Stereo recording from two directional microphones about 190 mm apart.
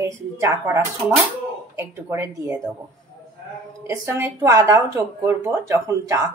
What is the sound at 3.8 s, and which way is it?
Speech, 15° right (ahead or behind).